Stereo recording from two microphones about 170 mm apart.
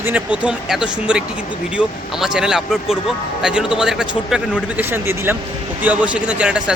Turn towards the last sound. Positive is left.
turn(degrees=-5)  # may be behind; listen again after turning